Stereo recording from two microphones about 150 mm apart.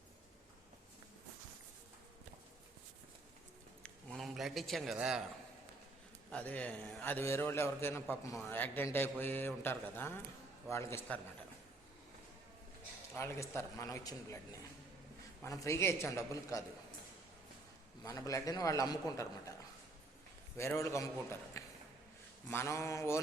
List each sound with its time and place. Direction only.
3.8 s a man's voice: centre (ahead or behind)
6.3 s a man's voice: 10° left (ahead or behind)
13.1 s a man's voice: 20° left (ahead or behind)
15.6 s a man's voice: 20° left (ahead or behind)
18.0 s a man's voice: 20° left (ahead or behind)
20.6 s a man's voice: 20° left (ahead or behind)